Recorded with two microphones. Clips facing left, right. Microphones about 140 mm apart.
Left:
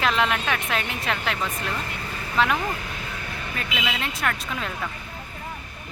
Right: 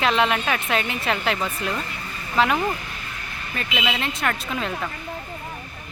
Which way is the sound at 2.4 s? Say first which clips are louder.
Right 2 dB; centre (ahead or behind).